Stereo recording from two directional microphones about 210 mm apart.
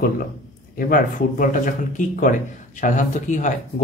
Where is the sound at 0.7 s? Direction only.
40° left (ahead or behind).